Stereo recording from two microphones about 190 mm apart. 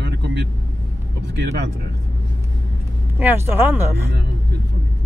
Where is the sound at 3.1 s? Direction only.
10° right (ahead or behind).